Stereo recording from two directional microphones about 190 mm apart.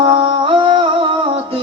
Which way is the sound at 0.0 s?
25° right (ahead or behind).